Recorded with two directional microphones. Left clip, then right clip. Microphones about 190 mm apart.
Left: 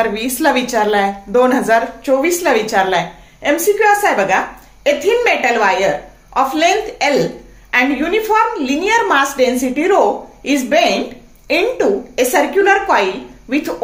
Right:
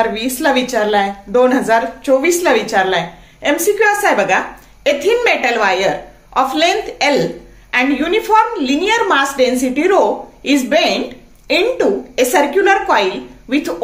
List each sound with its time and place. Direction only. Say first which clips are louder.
0.0 s a woman's voice: even; centre (ahead or behind)